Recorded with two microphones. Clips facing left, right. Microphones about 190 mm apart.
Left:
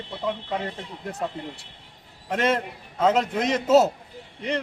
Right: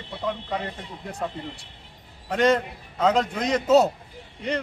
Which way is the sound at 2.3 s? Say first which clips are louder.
Right 3 dB; 5° left (ahead or behind).